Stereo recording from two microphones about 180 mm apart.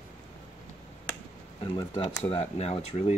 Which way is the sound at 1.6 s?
20° left (ahead or behind).